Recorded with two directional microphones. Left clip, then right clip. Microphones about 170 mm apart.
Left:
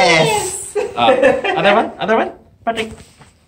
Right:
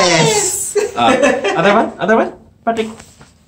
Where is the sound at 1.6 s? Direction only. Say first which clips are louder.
Right 1 dB; 5° right (ahead or behind).